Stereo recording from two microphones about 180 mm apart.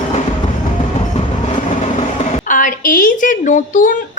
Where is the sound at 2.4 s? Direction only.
50° left (ahead or behind).